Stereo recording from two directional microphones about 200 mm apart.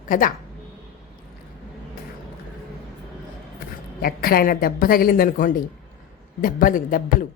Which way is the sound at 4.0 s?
50° left (ahead or behind).